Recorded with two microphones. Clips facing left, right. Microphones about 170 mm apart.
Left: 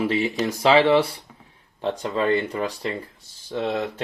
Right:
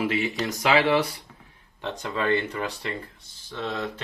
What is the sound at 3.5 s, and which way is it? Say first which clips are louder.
Speech: left 5 dB; 45° left (ahead or behind).